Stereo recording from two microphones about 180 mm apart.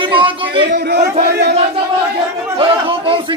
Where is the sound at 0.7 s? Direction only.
65° right (ahead or behind).